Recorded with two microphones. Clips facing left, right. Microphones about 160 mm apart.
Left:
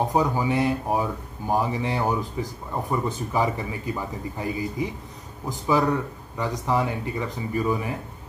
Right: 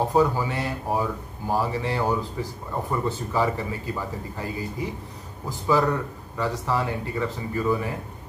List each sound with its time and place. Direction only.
0.0 s a man's voice: 15° left (ahead or behind)